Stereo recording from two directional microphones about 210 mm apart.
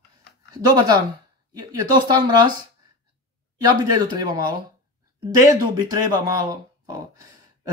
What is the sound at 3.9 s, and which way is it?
Speech, 20° right (ahead or behind).